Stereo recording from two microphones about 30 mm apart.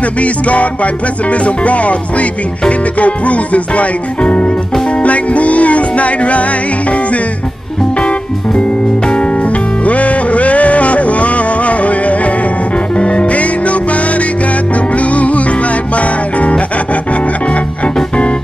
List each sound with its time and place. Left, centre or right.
0.0 s music: left
8.5 s music: left
12.9 s music: left